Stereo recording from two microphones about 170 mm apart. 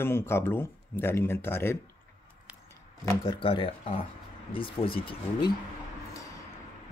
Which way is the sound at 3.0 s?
25° left (ahead or behind).